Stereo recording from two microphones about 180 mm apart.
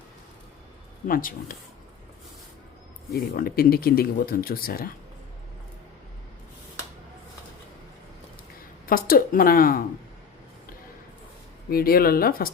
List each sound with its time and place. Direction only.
1.0 s speech: 50° left (ahead or behind)
3.1 s speech: 55° left (ahead or behind)
8.9 s speech: 55° left (ahead or behind)
11.7 s speech: 55° left (ahead or behind)